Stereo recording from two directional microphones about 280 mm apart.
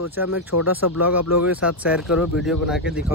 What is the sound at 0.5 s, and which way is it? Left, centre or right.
Speech, left.